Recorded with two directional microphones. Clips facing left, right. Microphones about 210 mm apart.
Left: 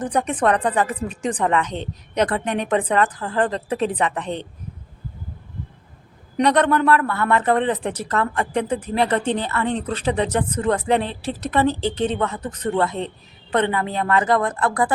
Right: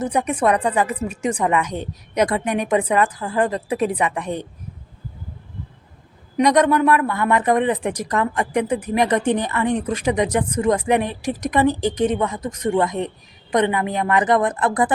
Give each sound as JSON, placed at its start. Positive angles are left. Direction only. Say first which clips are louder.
{"t": 0.0, "sound": "speech", "louder": "right 1 dB", "side_deg": -10}
{"t": 6.3, "sound": "speech", "louder": "right 2 dB", "side_deg": -10}